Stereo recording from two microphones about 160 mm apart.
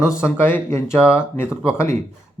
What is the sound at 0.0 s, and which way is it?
Speech, 15° left (ahead or behind).